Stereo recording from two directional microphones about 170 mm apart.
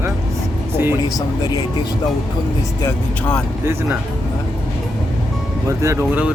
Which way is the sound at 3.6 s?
15° right (ahead or behind).